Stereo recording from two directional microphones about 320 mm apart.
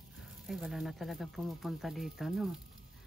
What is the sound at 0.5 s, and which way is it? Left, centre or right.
Speech, centre.